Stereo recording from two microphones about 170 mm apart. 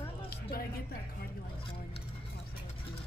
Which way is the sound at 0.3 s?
60° left (ahead or behind).